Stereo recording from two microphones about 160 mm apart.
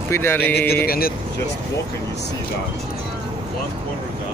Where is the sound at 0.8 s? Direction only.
70° left (ahead or behind).